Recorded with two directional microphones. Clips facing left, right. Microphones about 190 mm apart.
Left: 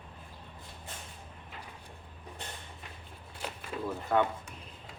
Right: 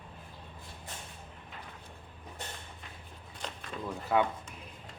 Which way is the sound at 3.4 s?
5° left (ahead or behind).